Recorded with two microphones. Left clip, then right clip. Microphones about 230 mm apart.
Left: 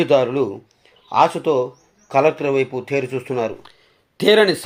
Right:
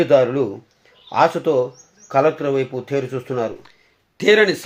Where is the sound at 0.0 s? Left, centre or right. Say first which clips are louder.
Right 1 dB; centre.